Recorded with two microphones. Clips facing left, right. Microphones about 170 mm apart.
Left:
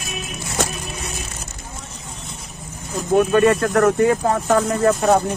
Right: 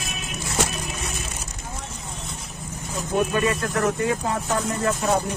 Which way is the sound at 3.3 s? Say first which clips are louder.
Left 8 dB; 60° left (ahead or behind).